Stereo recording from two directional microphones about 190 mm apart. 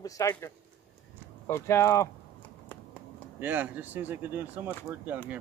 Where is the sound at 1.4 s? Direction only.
15° left (ahead or behind).